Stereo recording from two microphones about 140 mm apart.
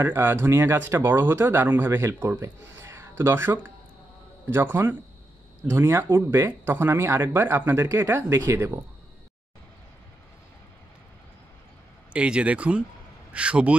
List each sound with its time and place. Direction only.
0.0 s speech: 15° right (ahead or behind)
12.1 s speech: 10° right (ahead or behind)